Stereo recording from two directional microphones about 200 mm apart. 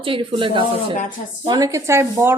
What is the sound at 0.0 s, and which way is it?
A woman's voice, 25° right (ahead or behind).